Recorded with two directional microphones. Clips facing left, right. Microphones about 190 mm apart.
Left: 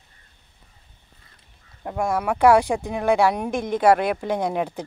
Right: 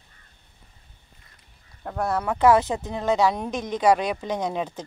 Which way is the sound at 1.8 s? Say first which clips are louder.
Left 2 dB; 15° left (ahead or behind).